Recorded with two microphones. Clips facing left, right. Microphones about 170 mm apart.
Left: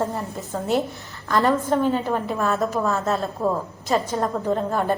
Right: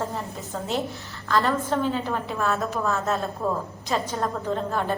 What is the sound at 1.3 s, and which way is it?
Speech, 15° left (ahead or behind).